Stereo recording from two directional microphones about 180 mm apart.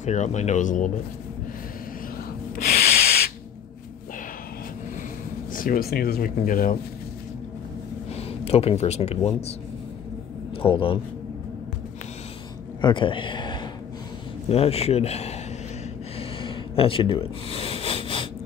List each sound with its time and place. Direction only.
0.0 s speech: 40° left (ahead or behind)
2.5 s sanding: 55° left (ahead or behind)
5.5 s speech: 50° left (ahead or behind)
8.3 s speech: 35° left (ahead or behind)
10.6 s a man's voice: 30° left (ahead or behind)
12.8 s a man's voice: 25° left (ahead or behind)
16.2 s a sound: 30° left (ahead or behind)